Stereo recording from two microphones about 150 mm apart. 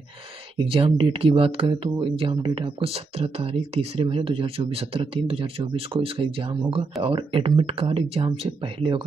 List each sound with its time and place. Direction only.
0.6 s speech: 35° right (ahead or behind)